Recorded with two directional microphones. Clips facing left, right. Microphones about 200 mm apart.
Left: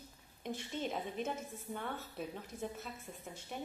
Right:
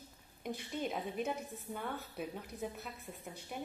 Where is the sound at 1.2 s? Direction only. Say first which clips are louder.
Right 2 dB; 15° right (ahead or behind).